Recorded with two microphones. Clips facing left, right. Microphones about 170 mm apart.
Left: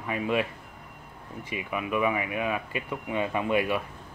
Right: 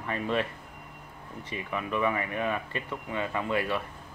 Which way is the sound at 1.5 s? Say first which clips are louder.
Left 2 dB; 10° left (ahead or behind).